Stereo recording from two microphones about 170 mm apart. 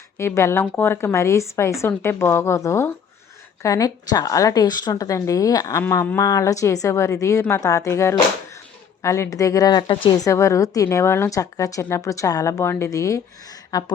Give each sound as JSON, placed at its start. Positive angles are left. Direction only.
{"t": 0.2, "sound": "a woman's voice", "side_deg": 15}